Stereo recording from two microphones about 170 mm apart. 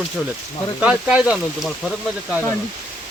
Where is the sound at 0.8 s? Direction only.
5° right (ahead or behind).